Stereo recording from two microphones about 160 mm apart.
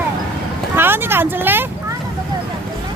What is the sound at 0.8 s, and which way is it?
Speech, 15° right (ahead or behind).